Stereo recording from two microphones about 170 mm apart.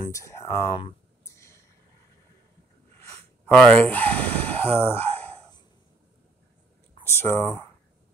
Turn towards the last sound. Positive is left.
turn(degrees=15)  # may be behind; listen again after turning